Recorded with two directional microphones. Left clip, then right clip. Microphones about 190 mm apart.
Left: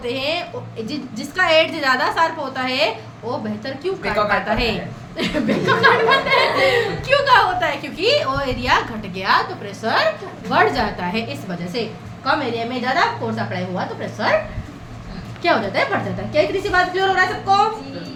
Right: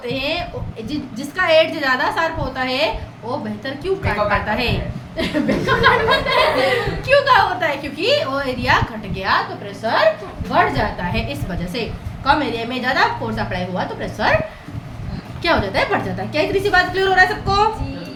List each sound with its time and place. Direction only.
0.0 s a woman's voice: 10° left (ahead or behind)
15.4 s a woman's voice: centre (ahead or behind)